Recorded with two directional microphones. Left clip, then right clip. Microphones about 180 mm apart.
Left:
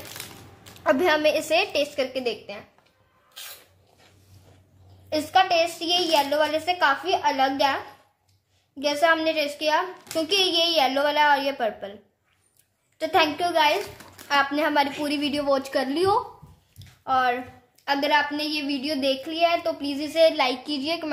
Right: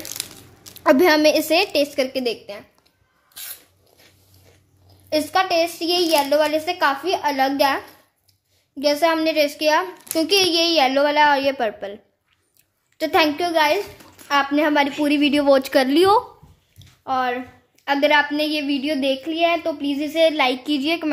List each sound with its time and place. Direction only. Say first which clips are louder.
0.7 s a woman's voice: right 6 dB; 50° right (ahead or behind)
5.1 s a woman's voice: right 2 dB; 40° right (ahead or behind); by 16.2 s 60° right (ahead or behind)
16.7 s a sound: right 1 dB; 40° right (ahead or behind)
17.8 s a woman's voice: right 5 dB; 50° right (ahead or behind)